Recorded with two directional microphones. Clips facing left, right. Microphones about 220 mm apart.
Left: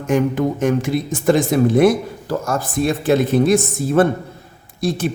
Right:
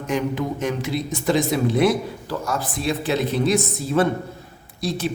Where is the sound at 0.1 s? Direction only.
50° left (ahead or behind).